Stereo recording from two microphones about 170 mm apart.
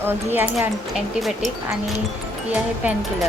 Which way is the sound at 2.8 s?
10° right (ahead or behind).